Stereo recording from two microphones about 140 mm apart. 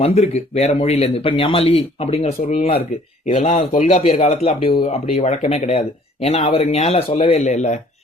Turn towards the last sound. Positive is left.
turn(degrees=55)  # may be behind; listen again after turning